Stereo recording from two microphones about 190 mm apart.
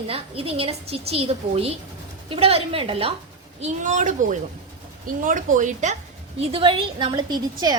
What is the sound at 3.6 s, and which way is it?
A woman's voice, 40° right (ahead or behind).